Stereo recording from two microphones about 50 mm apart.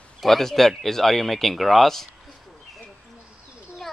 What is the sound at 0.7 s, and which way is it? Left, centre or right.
Speech, centre.